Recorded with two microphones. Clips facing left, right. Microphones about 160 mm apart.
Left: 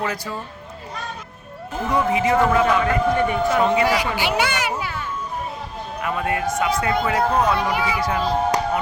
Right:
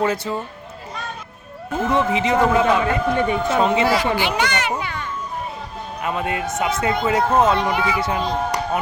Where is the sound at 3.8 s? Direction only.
10° left (ahead or behind).